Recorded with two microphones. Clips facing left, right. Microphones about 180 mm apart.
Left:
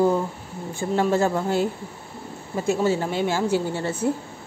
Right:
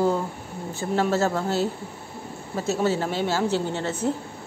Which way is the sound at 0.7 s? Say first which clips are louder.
Left 2 dB; 15° left (ahead or behind).